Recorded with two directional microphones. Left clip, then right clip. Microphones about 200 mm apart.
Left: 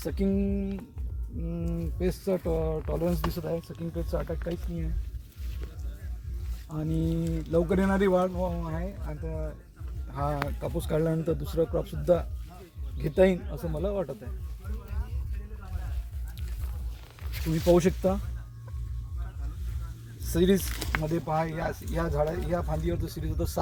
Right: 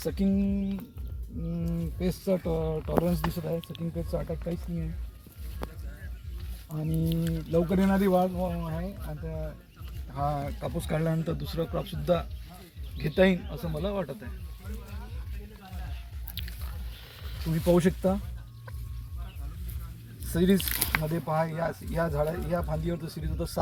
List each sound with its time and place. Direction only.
0.0 s speech: 5° left (ahead or behind)
6.7 s speech: 5° left (ahead or behind)
10.2 s speech: 30° left (ahead or behind)
10.6 s speech: 45° left (ahead or behind)
17.7 s speech: 30° left (ahead or behind)
20.3 s speech: 30° left (ahead or behind)